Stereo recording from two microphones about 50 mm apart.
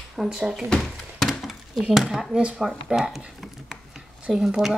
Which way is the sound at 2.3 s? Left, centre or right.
Centre.